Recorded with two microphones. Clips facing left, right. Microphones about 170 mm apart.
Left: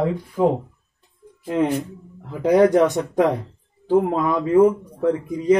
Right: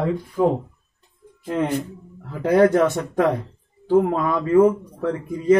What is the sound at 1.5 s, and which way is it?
Speech, 20° left (ahead or behind).